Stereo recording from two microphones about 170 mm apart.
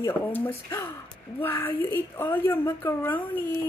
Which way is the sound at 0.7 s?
20° left (ahead or behind).